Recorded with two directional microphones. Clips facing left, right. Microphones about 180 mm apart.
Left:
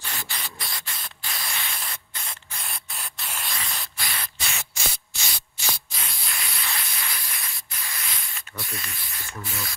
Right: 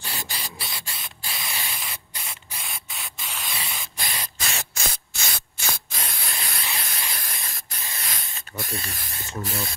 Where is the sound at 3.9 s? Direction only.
20° right (ahead or behind).